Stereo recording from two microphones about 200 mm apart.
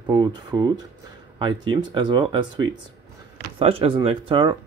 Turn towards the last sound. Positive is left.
turn(degrees=-25)  # may be behind; listen again after turning